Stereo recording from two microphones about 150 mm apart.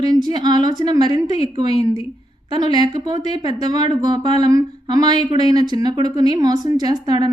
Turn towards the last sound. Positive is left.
turn(degrees=-30)  # may be behind; listen again after turning